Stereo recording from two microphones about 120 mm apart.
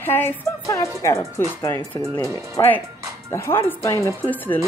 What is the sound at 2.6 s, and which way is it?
Speech, 35° left (ahead or behind).